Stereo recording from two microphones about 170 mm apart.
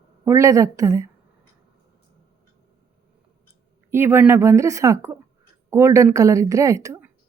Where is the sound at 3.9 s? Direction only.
15° right (ahead or behind).